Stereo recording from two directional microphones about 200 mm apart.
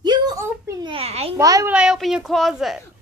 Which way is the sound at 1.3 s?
15° right (ahead or behind).